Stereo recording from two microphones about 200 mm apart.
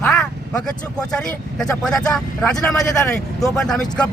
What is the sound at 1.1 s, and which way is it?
Speech, 5° left (ahead or behind).